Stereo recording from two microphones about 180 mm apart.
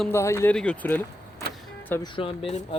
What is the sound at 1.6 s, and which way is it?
Vehicle, 10° left (ahead or behind).